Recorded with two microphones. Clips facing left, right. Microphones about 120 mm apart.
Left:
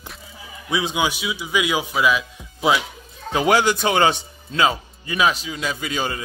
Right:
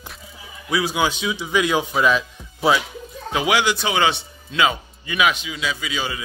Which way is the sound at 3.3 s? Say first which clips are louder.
Left 2 dB; 40° left (ahead or behind).